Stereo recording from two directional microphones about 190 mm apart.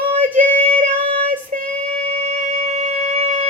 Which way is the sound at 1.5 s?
40° right (ahead or behind).